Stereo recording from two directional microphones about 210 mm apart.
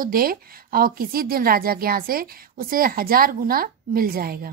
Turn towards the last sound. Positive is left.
turn(degrees=-45)  # may be behind; listen again after turning